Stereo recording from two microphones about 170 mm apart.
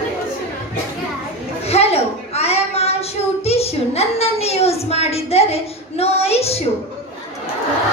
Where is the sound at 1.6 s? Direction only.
35° left (ahead or behind).